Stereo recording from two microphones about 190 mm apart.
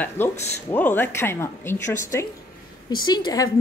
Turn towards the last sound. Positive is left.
turn(degrees=20)  # may be behind; listen again after turning